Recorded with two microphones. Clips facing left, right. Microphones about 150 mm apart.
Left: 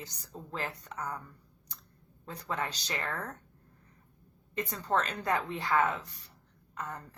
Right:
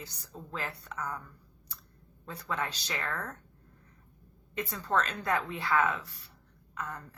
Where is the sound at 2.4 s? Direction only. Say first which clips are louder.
Even; 15° left (ahead or behind).